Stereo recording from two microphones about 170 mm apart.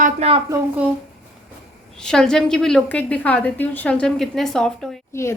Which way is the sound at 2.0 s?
5° left (ahead or behind).